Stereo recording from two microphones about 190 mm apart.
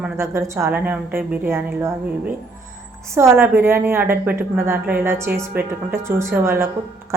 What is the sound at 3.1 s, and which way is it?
A woman's voice, 15° right (ahead or behind).